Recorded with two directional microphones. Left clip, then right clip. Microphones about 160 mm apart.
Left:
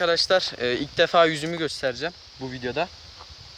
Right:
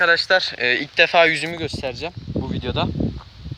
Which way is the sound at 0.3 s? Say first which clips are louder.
Right 4 dB; 15° left (ahead or behind).